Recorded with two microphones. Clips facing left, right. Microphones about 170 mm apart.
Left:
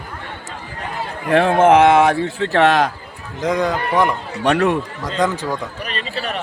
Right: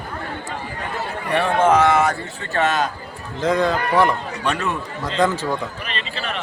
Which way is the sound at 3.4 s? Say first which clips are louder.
Even; 15° left (ahead or behind).